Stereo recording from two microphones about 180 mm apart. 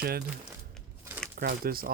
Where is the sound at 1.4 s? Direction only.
55° right (ahead or behind).